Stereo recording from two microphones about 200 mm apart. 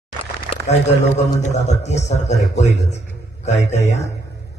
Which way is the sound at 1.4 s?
35° left (ahead or behind).